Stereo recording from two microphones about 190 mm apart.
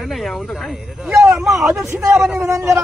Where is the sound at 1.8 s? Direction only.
15° right (ahead or behind).